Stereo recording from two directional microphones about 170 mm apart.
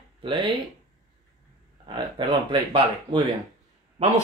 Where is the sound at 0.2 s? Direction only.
30° right (ahead or behind).